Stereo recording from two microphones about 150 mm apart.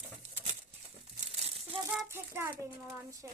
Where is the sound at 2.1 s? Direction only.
15° right (ahead or behind).